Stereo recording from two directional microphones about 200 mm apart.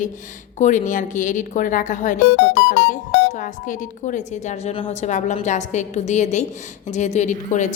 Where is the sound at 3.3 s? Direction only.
40° left (ahead or behind).